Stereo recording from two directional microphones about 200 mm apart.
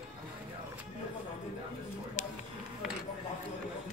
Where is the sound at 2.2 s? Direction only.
35° left (ahead or behind).